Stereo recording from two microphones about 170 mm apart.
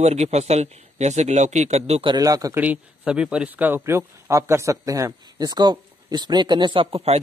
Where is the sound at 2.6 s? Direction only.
10° right (ahead or behind); by 7.2 s 35° right (ahead or behind).